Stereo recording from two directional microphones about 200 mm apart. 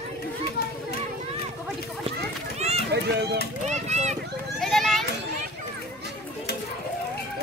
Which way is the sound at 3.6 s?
35° right (ahead or behind).